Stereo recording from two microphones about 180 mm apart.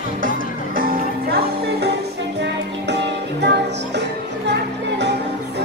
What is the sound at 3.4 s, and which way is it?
Music, 70° right (ahead or behind).